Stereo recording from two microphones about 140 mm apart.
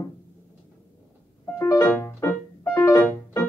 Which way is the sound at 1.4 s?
20° left (ahead or behind).